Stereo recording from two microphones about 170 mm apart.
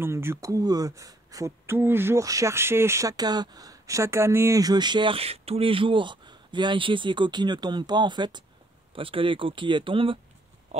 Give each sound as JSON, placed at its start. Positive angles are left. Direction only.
{"t": 0.0, "sound": "speech", "side_deg": -15}